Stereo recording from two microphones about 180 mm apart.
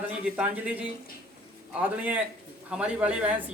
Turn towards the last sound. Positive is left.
turn(degrees=-10)  # may be behind; listen again after turning